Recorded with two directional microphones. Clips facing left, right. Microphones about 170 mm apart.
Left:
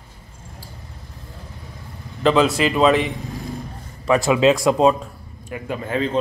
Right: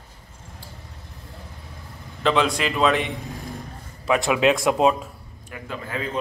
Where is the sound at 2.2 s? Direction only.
Centre (ahead or behind).